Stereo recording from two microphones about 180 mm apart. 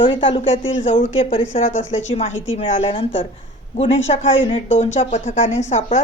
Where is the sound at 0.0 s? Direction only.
30° left (ahead or behind).